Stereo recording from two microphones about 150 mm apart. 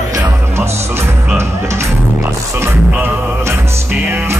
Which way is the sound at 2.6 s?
15° right (ahead or behind).